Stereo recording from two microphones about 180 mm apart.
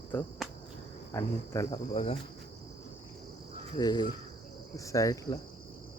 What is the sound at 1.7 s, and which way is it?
Cricket, 30° left (ahead or behind).